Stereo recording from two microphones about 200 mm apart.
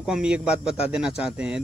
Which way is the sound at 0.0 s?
5° right (ahead or behind).